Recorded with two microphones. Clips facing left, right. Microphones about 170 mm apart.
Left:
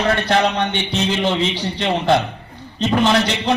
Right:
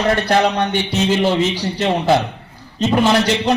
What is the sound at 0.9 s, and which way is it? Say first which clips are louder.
A man's voice: right 3 dB; 10° right (ahead or behind).